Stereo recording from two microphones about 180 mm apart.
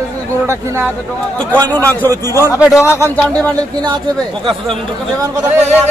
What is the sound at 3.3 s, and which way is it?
Speech, 25° right (ahead or behind).